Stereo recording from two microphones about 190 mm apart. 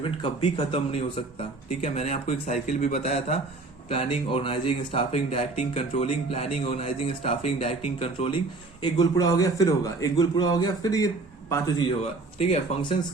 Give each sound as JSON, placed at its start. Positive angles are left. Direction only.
{"t": 0.0, "sound": "a man's voice", "side_deg": 30}
{"t": 12.4, "sound": "a man's voice", "side_deg": 30}